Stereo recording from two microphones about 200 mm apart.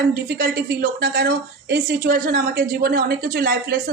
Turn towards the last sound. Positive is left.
turn(degrees=-50)  # may be behind; listen again after turning